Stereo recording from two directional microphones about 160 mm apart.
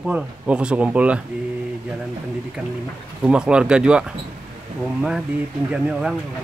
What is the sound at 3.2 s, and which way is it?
Speech, 5° right (ahead or behind).